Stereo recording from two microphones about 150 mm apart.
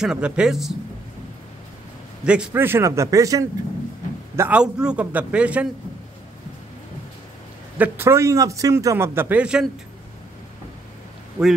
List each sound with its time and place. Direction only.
0.0 s speech: 5° right (ahead or behind)
2.2 s a man's voice: 5° right (ahead or behind)
4.4 s a man's voice: 10° right (ahead or behind)
7.7 s a man's voice: 15° right (ahead or behind)
11.4 s speech: 20° right (ahead or behind)